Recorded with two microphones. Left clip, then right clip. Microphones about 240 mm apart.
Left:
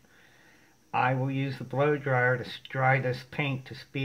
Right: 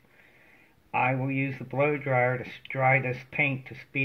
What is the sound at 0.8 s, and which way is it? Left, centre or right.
Speech, left.